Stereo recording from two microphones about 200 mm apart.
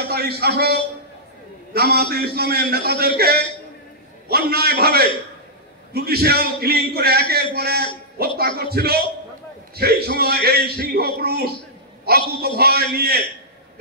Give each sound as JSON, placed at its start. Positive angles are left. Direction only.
{"t": 0.1, "sound": "a man's voice", "side_deg": -50}